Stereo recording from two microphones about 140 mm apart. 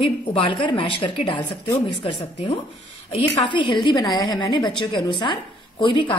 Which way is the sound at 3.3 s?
35° left (ahead or behind).